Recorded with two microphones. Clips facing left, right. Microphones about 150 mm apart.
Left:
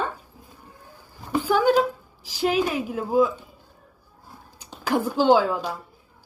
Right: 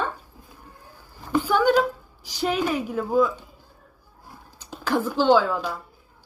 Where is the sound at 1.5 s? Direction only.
40° left (ahead or behind).